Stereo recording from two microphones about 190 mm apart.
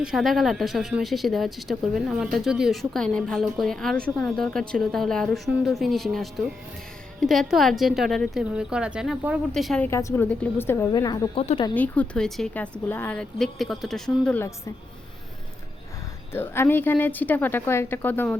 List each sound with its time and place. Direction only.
0.0 s a woman's voice: centre (ahead or behind); by 11.3 s 20° left (ahead or behind)
11.3 s speech: 30° left (ahead or behind)
11.7 s speech: 10° left (ahead or behind)
16.3 s a woman's voice: 10° left (ahead or behind)